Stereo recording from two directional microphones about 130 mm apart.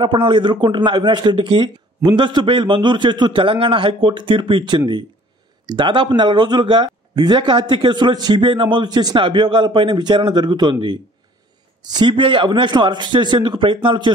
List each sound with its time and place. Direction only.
0.0 s a man's voice: 40° right (ahead or behind)